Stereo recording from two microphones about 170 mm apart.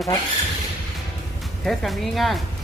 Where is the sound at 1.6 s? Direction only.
Centre (ahead or behind).